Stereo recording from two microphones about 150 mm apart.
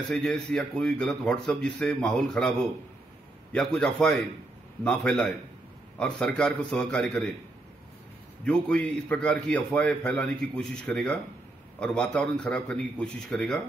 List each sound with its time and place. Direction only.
0.1 s a man's voice: 5° left (ahead or behind)
3.5 s a man's voice: 5° left (ahead or behind)
8.5 s a man's voice: 10° left (ahead or behind)